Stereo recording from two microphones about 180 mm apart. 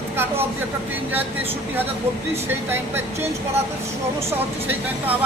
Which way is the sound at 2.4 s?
10° right (ahead or behind).